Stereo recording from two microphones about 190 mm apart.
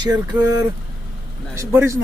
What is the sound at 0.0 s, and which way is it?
Speech, 20° right (ahead or behind).